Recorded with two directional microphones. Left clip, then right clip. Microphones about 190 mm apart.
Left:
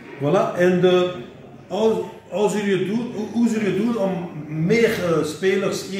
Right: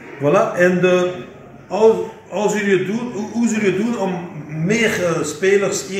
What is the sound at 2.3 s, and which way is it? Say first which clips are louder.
Speech: right 3 dB; 15° right (ahead or behind).